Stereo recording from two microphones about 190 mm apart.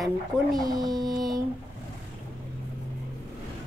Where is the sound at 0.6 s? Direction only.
20° right (ahead or behind).